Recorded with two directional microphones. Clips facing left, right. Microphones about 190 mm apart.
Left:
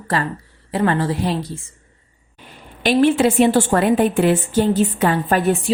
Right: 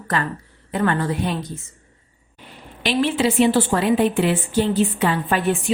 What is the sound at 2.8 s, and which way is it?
A woman's voice, 50° left (ahead or behind).